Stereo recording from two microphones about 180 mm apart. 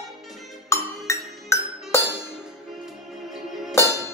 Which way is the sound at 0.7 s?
15° left (ahead or behind).